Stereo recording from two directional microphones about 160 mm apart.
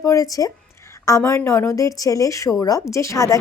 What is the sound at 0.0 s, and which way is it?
A woman's voice, 20° left (ahead or behind).